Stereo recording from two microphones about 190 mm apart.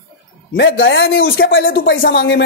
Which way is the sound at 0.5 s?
70° left (ahead or behind).